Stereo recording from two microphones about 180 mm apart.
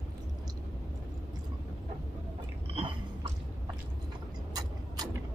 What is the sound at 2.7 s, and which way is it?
Chewing, 30° right (ahead or behind).